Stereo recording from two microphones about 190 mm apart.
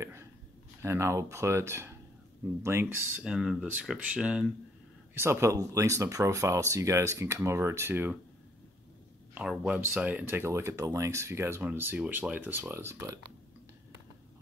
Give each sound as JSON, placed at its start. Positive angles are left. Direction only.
{"t": 0.8, "sound": "speech", "side_deg": -15}
{"t": 9.3, "sound": "speech", "side_deg": -5}